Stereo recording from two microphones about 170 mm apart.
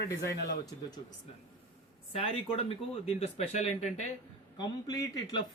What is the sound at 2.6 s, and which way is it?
Speech, 40° left (ahead or behind).